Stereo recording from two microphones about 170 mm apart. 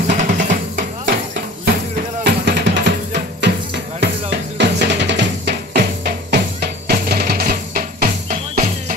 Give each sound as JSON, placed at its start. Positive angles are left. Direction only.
{"t": 0.1, "sound": "music", "side_deg": -50}
{"t": 2.2, "sound": "music", "side_deg": -80}
{"t": 4.6, "sound": "drum", "side_deg": -90}